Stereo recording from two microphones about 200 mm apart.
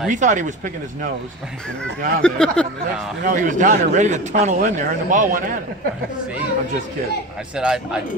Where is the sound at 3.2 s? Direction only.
40° right (ahead or behind).